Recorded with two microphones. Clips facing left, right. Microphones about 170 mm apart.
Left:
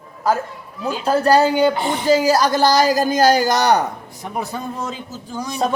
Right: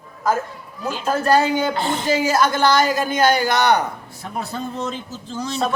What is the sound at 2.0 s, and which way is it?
Speech, 35° left (ahead or behind).